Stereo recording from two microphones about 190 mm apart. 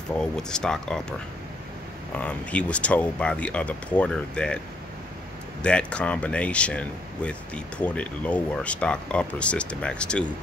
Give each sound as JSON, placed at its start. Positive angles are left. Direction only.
{"t": 0.2, "sound": "speech", "side_deg": 5}
{"t": 2.1, "sound": "speech", "side_deg": 5}
{"t": 5.6, "sound": "speech", "side_deg": 5}